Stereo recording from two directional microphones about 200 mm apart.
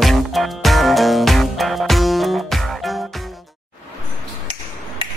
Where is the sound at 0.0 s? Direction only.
Centre (ahead or behind).